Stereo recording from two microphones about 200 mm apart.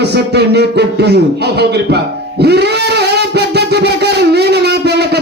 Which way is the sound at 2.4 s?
55° right (ahead or behind).